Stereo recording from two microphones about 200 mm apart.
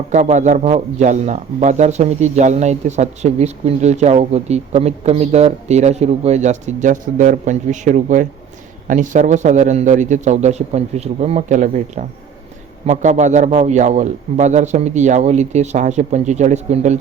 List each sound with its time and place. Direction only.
0.1 s a man's voice: 35° right (ahead or behind)